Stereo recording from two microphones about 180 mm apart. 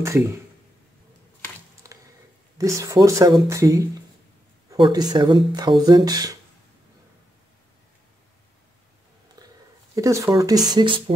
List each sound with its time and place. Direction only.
0.0 s speech: 15° right (ahead or behind)
2.5 s speech: 15° right (ahead or behind)
9.4 s a sound: 20° right (ahead or behind)
9.9 s speech: 15° right (ahead or behind)